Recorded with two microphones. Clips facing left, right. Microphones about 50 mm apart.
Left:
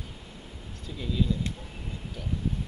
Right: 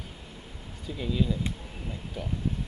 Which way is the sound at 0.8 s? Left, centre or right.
Centre.